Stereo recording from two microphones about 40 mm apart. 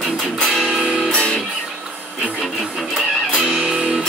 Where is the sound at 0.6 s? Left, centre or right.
Centre.